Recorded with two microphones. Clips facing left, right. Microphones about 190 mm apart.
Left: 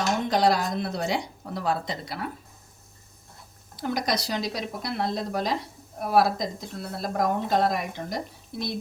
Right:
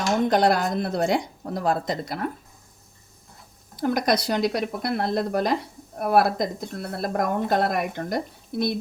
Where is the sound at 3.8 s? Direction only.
55° right (ahead or behind).